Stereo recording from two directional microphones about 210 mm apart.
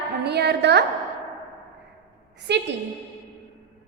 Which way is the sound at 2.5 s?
55° right (ahead or behind).